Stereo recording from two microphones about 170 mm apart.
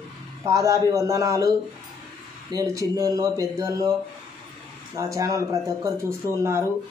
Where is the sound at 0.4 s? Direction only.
20° right (ahead or behind).